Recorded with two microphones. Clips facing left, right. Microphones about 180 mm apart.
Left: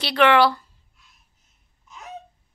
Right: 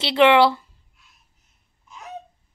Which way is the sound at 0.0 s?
25° right (ahead or behind).